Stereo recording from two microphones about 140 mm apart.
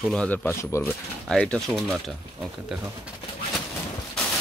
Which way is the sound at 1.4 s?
5° left (ahead or behind).